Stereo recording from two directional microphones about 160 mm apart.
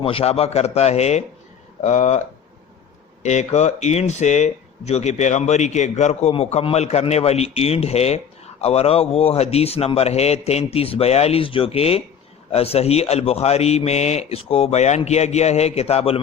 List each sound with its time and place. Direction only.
0.0 s speech: 35° left (ahead or behind)
3.2 s speech: 45° left (ahead or behind)